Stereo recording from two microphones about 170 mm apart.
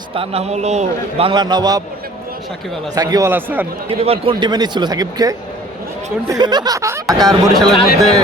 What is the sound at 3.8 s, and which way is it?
Speech, 35° right (ahead or behind).